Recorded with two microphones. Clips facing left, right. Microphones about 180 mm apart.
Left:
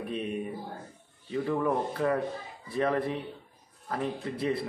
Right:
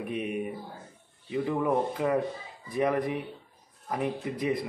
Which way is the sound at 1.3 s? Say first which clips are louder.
Right 1 dB; 15° right (ahead or behind).